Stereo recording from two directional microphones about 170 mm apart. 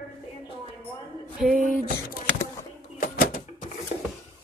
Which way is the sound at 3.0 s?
55° left (ahead or behind).